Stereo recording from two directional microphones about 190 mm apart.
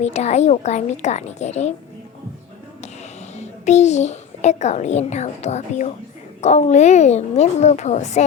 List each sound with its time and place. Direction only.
0.0 s a woman's voice: 35° left (ahead or behind)
3.3 s a child's voice: 35° left (ahead or behind)